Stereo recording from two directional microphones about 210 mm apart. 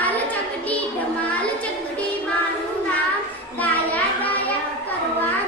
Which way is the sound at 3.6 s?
10° left (ahead or behind).